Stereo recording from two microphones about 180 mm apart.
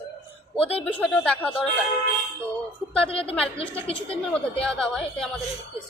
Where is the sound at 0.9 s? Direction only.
10° left (ahead or behind).